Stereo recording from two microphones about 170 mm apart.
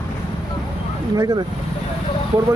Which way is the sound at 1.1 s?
20° right (ahead or behind).